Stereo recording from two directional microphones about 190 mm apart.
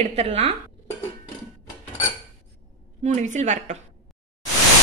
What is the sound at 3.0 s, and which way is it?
Speech, 40° right (ahead or behind).